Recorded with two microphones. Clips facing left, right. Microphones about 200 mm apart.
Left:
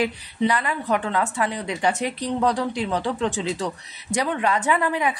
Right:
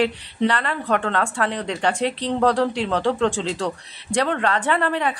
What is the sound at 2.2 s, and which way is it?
Speech, 85° right.